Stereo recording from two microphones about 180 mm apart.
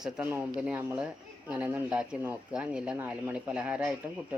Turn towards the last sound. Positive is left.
turn(degrees=-5)  # may be behind; listen again after turning